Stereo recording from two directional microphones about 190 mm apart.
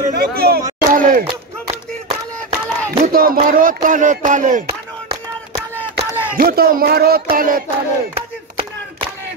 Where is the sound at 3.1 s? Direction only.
50° right (ahead or behind).